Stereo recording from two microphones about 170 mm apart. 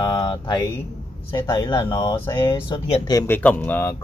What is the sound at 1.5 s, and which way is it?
Speech, 25° left (ahead or behind).